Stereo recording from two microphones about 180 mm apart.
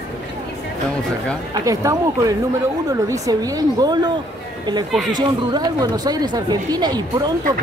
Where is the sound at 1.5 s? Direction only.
20° right (ahead or behind).